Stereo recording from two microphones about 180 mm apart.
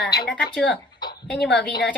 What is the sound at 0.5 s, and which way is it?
Speech, 5° left (ahead or behind).